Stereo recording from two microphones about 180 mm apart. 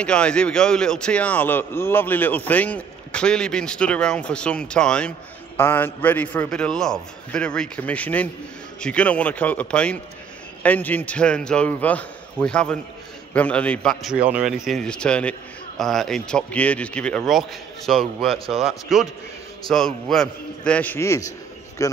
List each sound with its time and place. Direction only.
0.0 s a man's voice: 5° left (ahead or behind)